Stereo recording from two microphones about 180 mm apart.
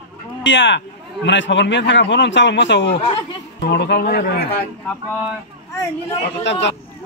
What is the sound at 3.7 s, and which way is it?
Speech, 70° left (ahead or behind).